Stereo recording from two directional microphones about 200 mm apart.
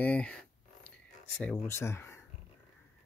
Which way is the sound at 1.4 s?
15° left (ahead or behind).